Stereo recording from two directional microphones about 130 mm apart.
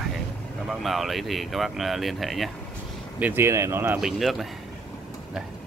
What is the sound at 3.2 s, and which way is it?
Speech, 15° right (ahead or behind).